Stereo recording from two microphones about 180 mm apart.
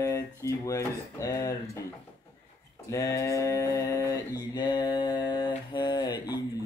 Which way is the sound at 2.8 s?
15° left (ahead or behind).